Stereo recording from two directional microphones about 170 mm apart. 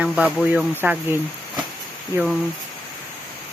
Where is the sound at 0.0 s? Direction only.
5° right (ahead or behind).